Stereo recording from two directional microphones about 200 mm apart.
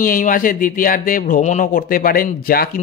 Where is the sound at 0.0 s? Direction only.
45° left (ahead or behind).